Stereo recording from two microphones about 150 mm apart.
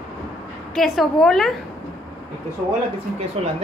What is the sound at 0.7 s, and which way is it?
Speech, centre (ahead or behind).